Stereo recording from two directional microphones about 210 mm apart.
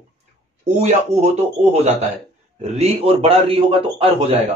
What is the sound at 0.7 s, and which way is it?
A man's voice, 30° right (ahead or behind).